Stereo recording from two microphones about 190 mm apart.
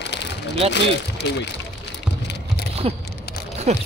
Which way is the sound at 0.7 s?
65° left (ahead or behind).